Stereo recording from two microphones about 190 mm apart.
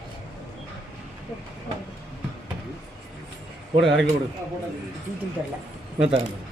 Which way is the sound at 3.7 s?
75° right (ahead or behind).